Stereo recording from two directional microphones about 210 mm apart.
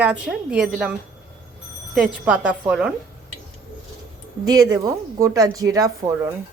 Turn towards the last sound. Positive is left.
turn(degrees=-15)  # may be behind; listen again after turning